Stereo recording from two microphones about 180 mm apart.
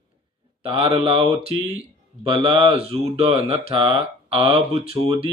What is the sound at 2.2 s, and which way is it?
A man's voice, 25° right (ahead or behind).